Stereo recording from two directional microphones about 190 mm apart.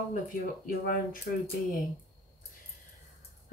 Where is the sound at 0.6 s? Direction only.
45° left (ahead or behind).